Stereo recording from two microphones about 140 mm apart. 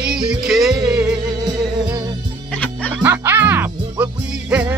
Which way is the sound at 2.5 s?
10° left (ahead or behind).